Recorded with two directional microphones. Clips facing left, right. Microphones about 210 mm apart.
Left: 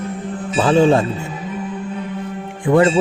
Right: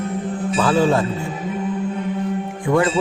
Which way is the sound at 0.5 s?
25° left (ahead or behind).